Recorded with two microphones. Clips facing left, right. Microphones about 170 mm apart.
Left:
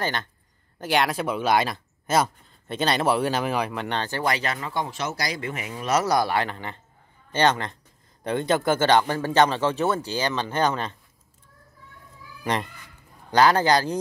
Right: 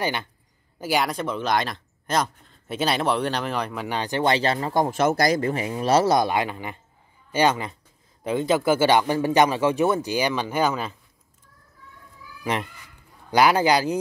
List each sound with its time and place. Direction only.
0.0 s speech: 10° right (ahead or behind); by 3.7 s 5° left (ahead or behind)
3.7 s speech: 5° right (ahead or behind)
4.0 s speech: 20° right (ahead or behind); by 5.5 s 45° right (ahead or behind)
5.5 s speech: 30° right (ahead or behind); by 11.0 s 5° right (ahead or behind)
13.3 s speech: 10° right (ahead or behind)